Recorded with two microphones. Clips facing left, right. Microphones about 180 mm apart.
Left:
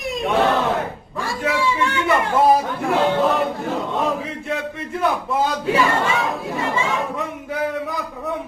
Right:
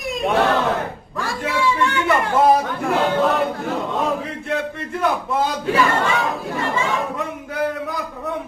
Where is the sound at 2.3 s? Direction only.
Centre (ahead or behind).